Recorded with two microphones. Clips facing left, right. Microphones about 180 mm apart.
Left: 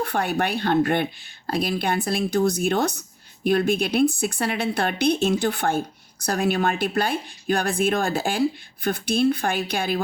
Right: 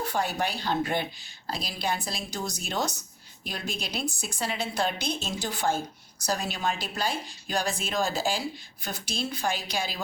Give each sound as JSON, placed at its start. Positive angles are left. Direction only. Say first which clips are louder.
{"t": 0.0, "sound": "speech", "louder": "left 5 dB", "side_deg": 60}